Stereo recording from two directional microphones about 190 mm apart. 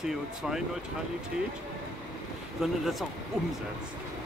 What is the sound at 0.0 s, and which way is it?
Speech, centre (ahead or behind).